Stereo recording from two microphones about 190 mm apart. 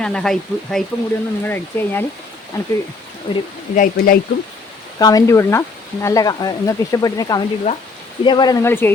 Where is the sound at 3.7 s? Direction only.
45° left (ahead or behind).